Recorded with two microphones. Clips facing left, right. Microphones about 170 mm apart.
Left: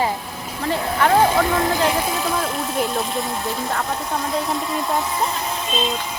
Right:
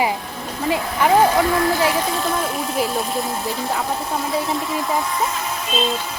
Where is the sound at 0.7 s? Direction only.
10° right (ahead or behind).